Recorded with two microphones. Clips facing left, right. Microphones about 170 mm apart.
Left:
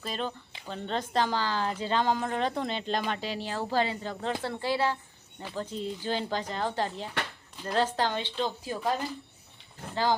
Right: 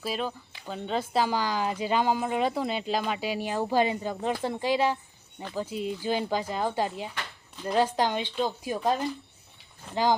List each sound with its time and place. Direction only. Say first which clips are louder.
0.0 s speech: right 3 dB; 5° right (ahead or behind)